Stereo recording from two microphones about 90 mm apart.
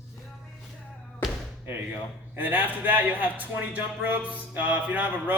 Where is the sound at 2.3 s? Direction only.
20° right (ahead or behind).